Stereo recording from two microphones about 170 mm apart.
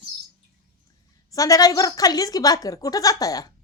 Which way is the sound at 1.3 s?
20° left (ahead or behind).